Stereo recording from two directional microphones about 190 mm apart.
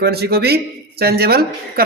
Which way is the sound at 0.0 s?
55° right (ahead or behind).